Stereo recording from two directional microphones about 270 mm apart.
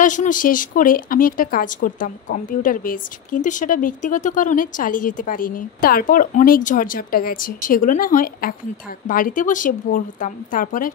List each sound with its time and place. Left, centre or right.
0.0 s a woman's voice: left